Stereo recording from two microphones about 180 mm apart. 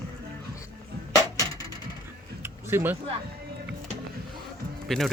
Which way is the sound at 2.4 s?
15° right (ahead or behind).